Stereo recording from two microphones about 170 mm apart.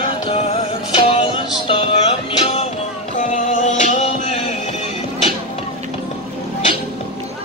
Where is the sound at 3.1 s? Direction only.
50° left (ahead or behind).